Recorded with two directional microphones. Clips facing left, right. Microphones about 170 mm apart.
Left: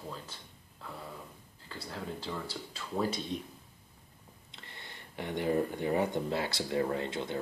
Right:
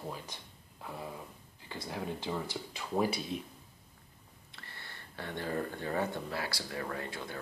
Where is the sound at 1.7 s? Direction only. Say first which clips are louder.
Right 2 dB; 15° right (ahead or behind).